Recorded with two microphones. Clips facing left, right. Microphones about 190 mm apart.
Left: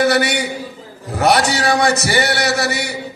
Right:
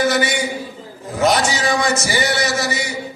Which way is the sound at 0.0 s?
65° left (ahead or behind).